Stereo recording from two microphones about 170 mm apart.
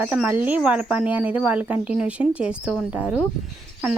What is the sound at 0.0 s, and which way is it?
A woman's voice, 10° right (ahead or behind).